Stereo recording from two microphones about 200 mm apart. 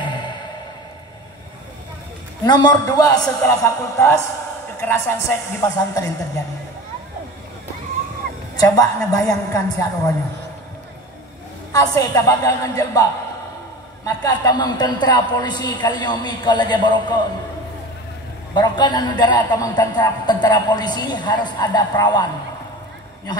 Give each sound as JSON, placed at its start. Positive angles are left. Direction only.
{"t": 2.4, "sound": "a man's voice", "side_deg": 20}
{"t": 8.5, "sound": "a woman's voice", "side_deg": 15}
{"t": 11.7, "sound": "a woman's voice", "side_deg": 15}
{"t": 14.0, "sound": "a man's voice", "side_deg": 20}
{"t": 18.5, "sound": "a man's voice", "side_deg": 20}